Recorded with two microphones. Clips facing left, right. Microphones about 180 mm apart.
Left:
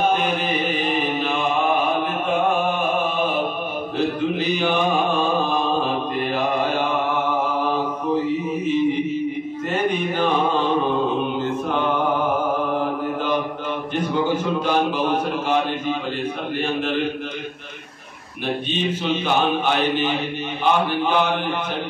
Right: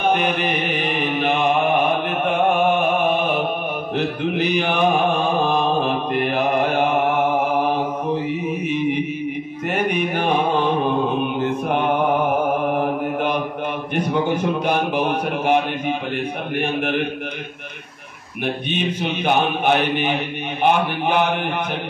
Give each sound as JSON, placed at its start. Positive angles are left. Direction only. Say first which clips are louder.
{"t": 0.0, "sound": "mantra", "louder": "right 1 dB", "side_deg": -60}
{"t": 10.1, "sound": "mantra", "louder": "right 2 dB", "side_deg": -60}
{"t": 14.4, "sound": "a man's voice", "louder": "even", "side_deg": -60}
{"t": 19.2, "sound": "a man's voice", "louder": "right 4 dB", "side_deg": -60}